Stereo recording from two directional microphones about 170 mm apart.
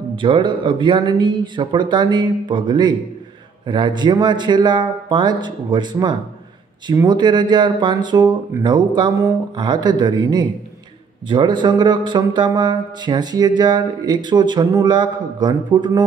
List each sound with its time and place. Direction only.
0.1 s speech: 30° right (ahead or behind)